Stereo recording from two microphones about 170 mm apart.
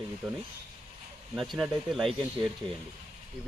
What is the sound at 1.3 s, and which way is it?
Speech, centre (ahead or behind).